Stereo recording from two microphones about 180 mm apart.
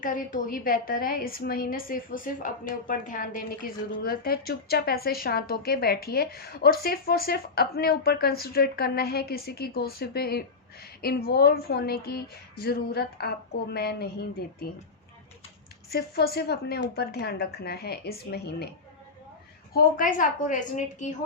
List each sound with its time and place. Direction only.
0.0 s a woman's voice: 50° left (ahead or behind)
15.9 s speech: 60° left (ahead or behind)
19.7 s a woman's voice: 50° left (ahead or behind)